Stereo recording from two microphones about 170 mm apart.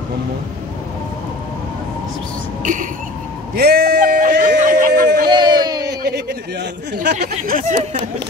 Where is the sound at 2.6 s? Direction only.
50° right (ahead or behind).